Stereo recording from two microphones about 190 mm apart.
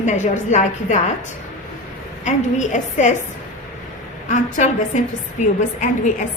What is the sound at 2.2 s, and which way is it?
Speech, 40° left (ahead or behind).